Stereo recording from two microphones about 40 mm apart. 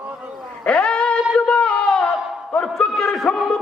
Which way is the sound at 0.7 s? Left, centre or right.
Left.